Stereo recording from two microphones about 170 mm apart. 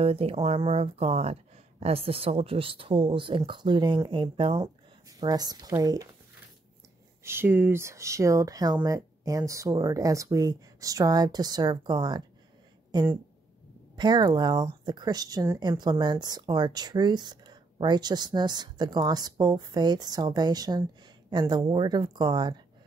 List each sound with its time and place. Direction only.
0.0 s speech: 35° right (ahead or behind)
7.2 s speech: 15° right (ahead or behind)